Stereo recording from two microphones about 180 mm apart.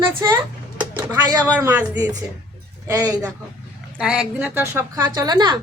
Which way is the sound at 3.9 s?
5° right (ahead or behind).